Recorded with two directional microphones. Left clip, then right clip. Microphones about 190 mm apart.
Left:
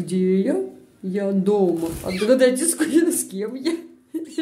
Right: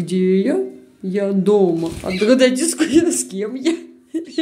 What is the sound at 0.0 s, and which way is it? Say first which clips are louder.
A woman's voice: right 4 dB; 10° right (ahead or behind).